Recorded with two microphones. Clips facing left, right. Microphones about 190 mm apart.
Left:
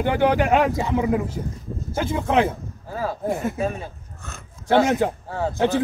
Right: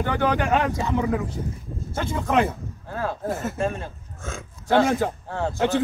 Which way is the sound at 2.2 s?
5° left (ahead or behind).